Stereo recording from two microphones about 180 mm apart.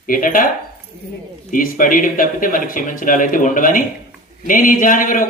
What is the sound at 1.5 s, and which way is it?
Speech, 50° left (ahead or behind).